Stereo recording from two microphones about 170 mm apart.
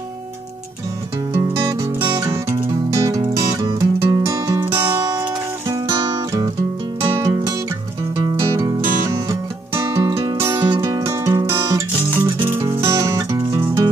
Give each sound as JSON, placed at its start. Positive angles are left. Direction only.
{"t": 2.0, "sound": "music", "side_deg": -25}
{"t": 12.8, "sound": "music", "side_deg": -20}